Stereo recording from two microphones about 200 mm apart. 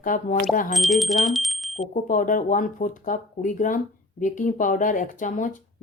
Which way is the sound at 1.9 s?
40° left (ahead or behind).